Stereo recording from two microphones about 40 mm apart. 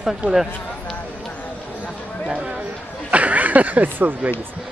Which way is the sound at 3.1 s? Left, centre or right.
Right.